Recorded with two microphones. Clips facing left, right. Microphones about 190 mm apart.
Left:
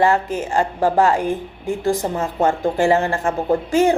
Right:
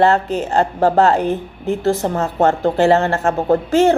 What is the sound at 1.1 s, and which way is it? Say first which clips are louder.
Speech: right 3 dB; 10° left (ahead or behind).